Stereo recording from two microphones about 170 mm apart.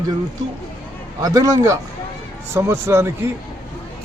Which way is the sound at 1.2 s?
20° right (ahead or behind).